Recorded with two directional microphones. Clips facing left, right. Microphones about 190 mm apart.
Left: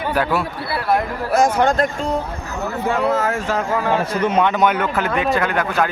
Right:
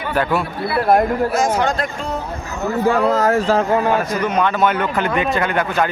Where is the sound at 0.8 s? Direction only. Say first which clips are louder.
Right 5 dB; 45° right (ahead or behind).